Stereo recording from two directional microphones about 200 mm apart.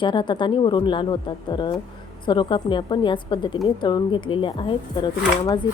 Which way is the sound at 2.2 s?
25° left (ahead or behind).